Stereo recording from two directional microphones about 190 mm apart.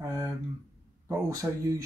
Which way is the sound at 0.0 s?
15° right (ahead or behind).